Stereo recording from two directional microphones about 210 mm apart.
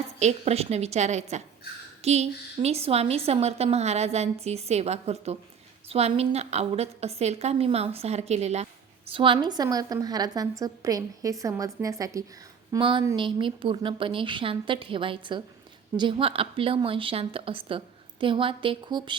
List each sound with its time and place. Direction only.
0.2 s a woman's voice: 30° right (ahead or behind)